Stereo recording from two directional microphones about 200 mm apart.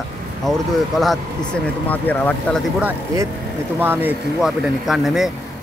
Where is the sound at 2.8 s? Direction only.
10° right (ahead or behind).